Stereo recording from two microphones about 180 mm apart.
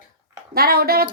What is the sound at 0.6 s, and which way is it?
Speech, 55° right (ahead or behind).